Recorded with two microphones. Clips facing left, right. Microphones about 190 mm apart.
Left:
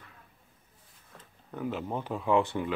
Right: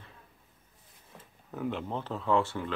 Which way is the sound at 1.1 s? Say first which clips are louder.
Even; centre (ahead or behind).